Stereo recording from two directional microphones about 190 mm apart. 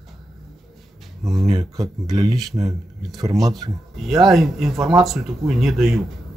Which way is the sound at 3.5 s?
Centre (ahead or behind).